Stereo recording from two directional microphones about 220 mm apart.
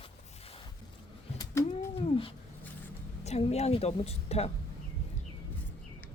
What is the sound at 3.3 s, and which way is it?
A woman's voice, 30° left (ahead or behind).